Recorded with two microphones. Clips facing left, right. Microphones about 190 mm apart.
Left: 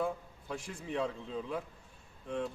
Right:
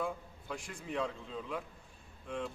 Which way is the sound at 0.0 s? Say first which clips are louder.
Left 3 dB; 35° left (ahead or behind).